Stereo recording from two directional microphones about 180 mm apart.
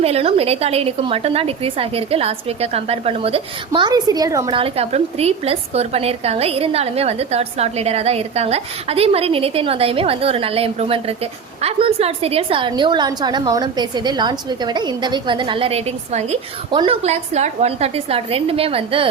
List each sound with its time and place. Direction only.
0.0 s a woman's voice: 35° right (ahead or behind); by 4.5 s 20° right (ahead or behind)
4.5 s a woman's voice: 35° right (ahead or behind)